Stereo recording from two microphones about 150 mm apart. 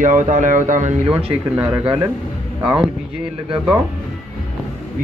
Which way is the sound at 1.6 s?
10° right (ahead or behind).